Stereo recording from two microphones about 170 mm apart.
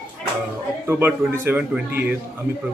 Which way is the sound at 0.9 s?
10° right (ahead or behind).